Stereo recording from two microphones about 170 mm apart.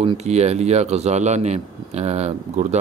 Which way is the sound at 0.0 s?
40° right (ahead or behind).